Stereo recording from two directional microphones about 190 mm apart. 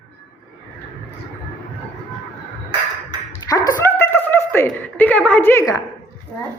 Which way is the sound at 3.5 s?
20° left (ahead or behind).